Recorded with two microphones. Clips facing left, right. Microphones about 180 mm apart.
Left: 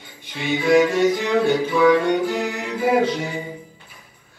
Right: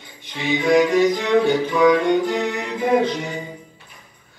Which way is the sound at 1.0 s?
10° left (ahead or behind).